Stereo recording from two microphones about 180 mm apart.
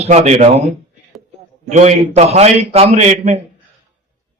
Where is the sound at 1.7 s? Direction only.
40° right (ahead or behind).